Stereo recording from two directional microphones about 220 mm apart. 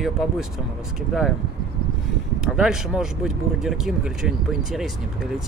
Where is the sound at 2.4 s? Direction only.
5° right (ahead or behind).